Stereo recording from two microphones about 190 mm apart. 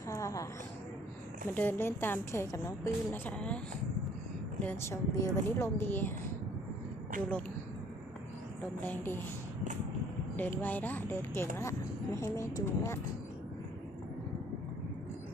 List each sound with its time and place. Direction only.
0.1 s a sound: 15° left (ahead or behind)
1.5 s a woman's voice: 10° left (ahead or behind)
4.6 s a woman's voice: 10° left (ahead or behind)
8.8 s a woman's voice: 10° left (ahead or behind)
10.3 s a woman's voice: 10° left (ahead or behind)